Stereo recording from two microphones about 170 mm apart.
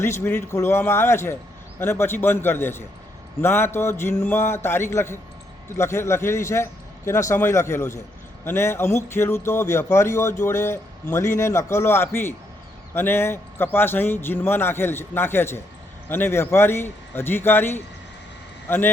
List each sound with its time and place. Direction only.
0.0 s a man's voice: 15° left (ahead or behind)